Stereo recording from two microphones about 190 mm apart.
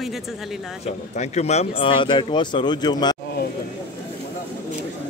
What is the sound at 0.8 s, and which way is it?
Speech, 35° left (ahead or behind).